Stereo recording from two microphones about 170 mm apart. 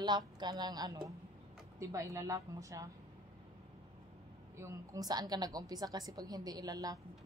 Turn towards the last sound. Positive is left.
turn(degrees=-20)  # may be behind; listen again after turning